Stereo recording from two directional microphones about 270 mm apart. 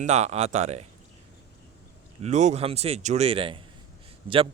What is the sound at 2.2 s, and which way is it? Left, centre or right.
Speech, right.